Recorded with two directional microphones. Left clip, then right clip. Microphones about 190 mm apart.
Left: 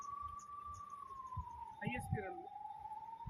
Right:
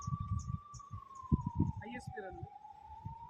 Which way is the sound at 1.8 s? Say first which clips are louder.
Left 2 dB; 10° left (ahead or behind).